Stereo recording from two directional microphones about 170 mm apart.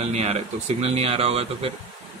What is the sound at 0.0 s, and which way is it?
Speech, 40° right (ahead or behind).